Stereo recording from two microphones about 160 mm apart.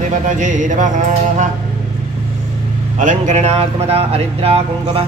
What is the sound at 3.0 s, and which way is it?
Mantra, 50° right (ahead or behind).